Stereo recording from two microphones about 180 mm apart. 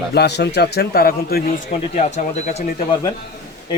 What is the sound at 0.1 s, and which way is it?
A man's voice, 65° left (ahead or behind).